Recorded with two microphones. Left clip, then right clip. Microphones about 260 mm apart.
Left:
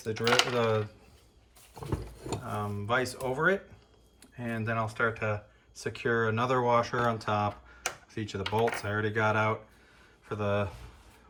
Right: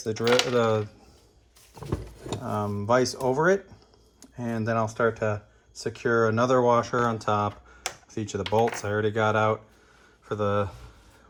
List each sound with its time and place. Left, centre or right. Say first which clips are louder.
0.0 s coin: right 3 dB; centre
1.7 s a sound: right 3 dB; centre
2.5 s speech: right 7 dB; centre